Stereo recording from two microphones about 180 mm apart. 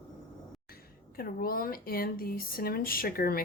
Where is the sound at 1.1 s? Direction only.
55° left (ahead or behind).